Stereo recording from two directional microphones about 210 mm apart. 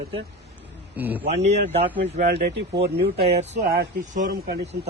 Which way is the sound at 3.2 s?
30° right (ahead or behind).